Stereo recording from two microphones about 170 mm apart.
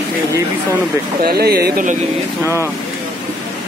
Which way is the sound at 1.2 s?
65° right (ahead or behind).